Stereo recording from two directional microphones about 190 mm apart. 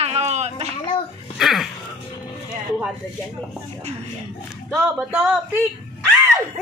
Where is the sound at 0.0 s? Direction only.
35° right (ahead or behind).